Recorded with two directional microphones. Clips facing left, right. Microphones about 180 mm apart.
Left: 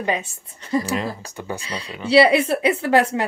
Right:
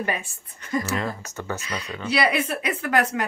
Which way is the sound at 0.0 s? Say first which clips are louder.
Left 4 dB; 20° left (ahead or behind).